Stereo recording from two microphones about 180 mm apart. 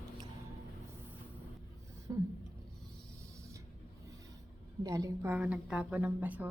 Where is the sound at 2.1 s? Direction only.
20° right (ahead or behind).